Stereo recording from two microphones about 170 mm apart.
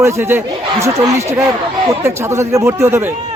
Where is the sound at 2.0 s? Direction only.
15° right (ahead or behind).